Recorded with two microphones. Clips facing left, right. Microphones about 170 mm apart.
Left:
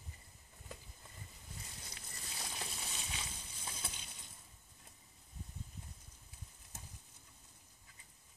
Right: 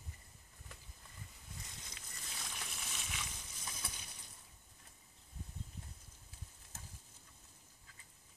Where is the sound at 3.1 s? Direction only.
30° left (ahead or behind).